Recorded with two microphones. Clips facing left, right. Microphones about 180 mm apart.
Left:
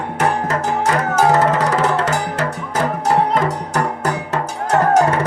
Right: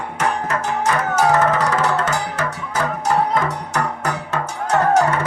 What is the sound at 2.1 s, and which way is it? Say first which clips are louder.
Music: left 3 dB; 50° left (ahead or behind).